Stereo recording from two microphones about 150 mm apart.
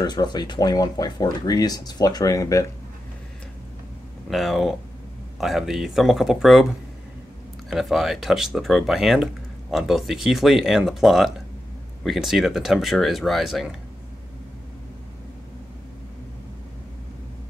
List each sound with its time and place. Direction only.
0.0 s speech: 30° left (ahead or behind)
4.3 s speech: centre (ahead or behind)
7.7 s speech: centre (ahead or behind)